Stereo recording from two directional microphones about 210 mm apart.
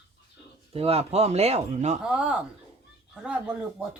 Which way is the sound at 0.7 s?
30° right (ahead or behind).